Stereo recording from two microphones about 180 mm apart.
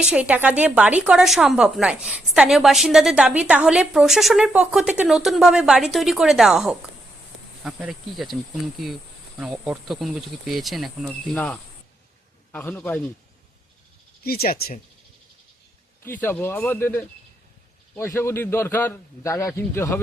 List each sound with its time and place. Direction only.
0.0 s a woman's voice: 5° right (ahead or behind); by 13.0 s 10° left (ahead or behind)
14.3 s speech: 55° left (ahead or behind)
16.0 s a man's voice: 10° left (ahead or behind)